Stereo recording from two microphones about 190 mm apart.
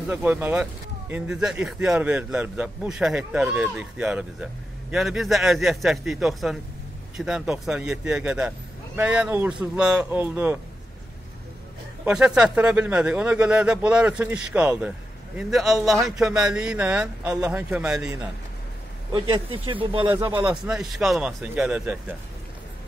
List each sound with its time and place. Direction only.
0.0 s a man's voice: 10° right (ahead or behind)
12.0 s speech: 5° right (ahead or behind)
19.1 s speech: 25° right (ahead or behind)
20.2 s speech: 10° right (ahead or behind)